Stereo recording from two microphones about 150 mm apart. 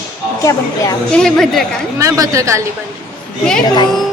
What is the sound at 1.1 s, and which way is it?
Speech, 5° left (ahead or behind).